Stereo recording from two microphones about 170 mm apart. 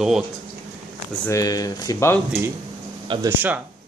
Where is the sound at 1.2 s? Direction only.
20° left (ahead or behind).